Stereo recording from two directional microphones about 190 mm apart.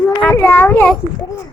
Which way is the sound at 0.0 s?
10° left (ahead or behind).